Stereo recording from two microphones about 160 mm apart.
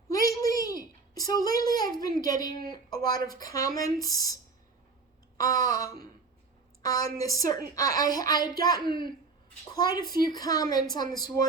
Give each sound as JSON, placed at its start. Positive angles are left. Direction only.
{"t": 0.1, "sound": "a sound", "side_deg": 20}
{"t": 1.1, "sound": "a woman's voice", "side_deg": 25}
{"t": 5.4, "sound": "a woman's voice", "side_deg": 20}